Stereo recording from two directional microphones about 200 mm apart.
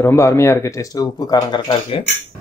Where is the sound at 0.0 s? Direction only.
15° left (ahead or behind).